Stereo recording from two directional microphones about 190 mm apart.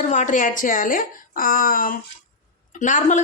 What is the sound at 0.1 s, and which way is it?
Speech, 40° left (ahead or behind).